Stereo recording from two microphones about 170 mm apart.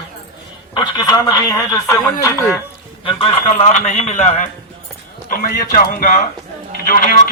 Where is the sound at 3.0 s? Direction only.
35° left (ahead or behind).